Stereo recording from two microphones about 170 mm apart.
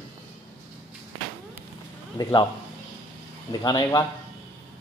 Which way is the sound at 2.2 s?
20° left (ahead or behind).